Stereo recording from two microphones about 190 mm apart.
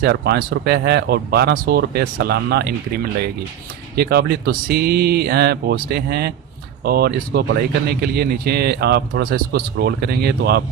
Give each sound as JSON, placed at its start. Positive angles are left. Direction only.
{"t": 0.0, "sound": "speech", "side_deg": -60}